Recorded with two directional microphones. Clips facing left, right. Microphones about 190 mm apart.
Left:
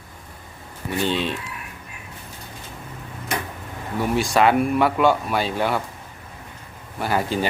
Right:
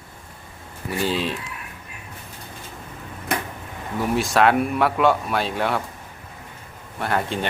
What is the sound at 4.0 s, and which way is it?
Speech, centre (ahead or behind).